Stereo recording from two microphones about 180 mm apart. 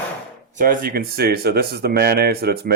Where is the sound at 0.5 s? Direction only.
50° right (ahead or behind).